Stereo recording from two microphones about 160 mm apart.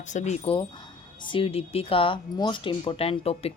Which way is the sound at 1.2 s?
35° left (ahead or behind).